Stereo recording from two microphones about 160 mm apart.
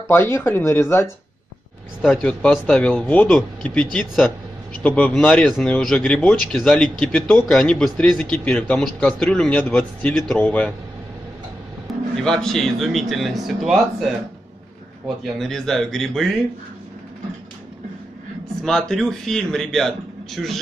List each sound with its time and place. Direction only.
0.1 s speech: 15° left (ahead or behind)
2.0 s speech: 5° left (ahead or behind)
11.9 s speech: 5° left (ahead or behind)
15.3 s speech: 5° left (ahead or behind)
18.6 s speech: 5° left (ahead or behind)